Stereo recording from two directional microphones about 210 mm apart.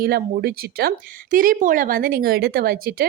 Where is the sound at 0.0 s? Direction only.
45° right (ahead or behind).